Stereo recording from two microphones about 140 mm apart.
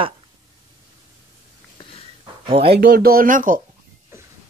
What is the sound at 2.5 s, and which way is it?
Speech, 40° right (ahead or behind).